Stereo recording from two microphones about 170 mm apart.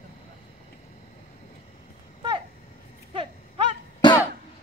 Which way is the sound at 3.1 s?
30° right (ahead or behind).